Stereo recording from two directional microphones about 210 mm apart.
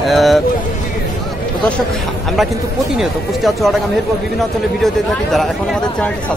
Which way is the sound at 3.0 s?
Centre (ahead or behind).